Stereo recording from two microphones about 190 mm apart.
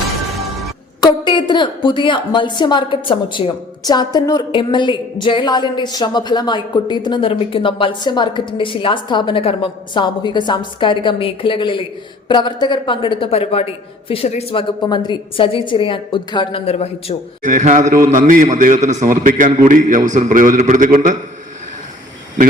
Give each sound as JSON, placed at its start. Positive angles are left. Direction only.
{"t": 1.0, "sound": "a woman's voice", "side_deg": 25}
{"t": 17.4, "sound": "a man's voice", "side_deg": -40}